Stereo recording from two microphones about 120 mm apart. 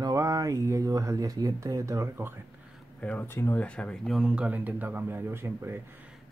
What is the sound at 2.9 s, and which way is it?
Speech, 10° left (ahead or behind).